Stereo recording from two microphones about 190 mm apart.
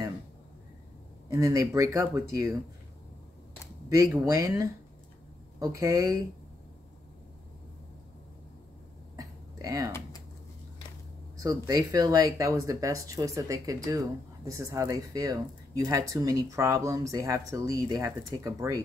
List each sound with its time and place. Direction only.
1.3 s speech: 15° right (ahead or behind)
4.1 s speech: 15° right (ahead or behind)
9.1 s a sound: 15° right (ahead or behind)
11.3 s speech: 20° right (ahead or behind)